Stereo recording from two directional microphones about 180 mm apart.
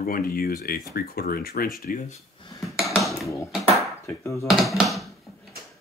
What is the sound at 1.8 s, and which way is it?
Speech, 45° left (ahead or behind).